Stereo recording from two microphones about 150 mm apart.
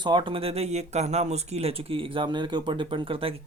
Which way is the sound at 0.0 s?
30° right (ahead or behind).